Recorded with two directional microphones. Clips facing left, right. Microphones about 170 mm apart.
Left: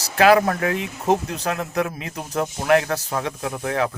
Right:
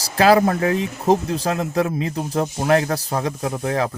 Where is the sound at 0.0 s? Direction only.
35° right (ahead or behind).